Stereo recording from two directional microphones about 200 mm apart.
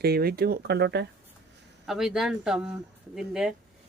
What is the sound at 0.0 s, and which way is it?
Speech, 50° right (ahead or behind).